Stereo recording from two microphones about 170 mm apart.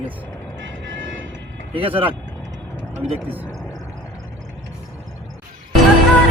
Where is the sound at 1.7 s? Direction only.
35° right (ahead or behind).